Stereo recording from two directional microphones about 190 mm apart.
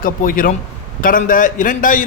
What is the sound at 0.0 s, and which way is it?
A man's voice, 45° left (ahead or behind).